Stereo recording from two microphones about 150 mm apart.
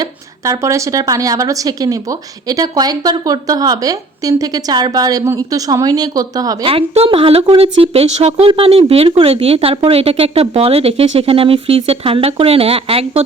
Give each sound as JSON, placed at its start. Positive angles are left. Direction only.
{"t": 0.0, "sound": "a woman's voice", "side_deg": -20}
{"t": 6.7, "sound": "a woman's voice", "side_deg": -40}